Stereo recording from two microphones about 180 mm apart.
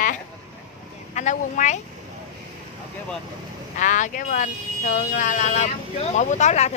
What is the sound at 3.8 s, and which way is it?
A woman's voice, 45° left (ahead or behind).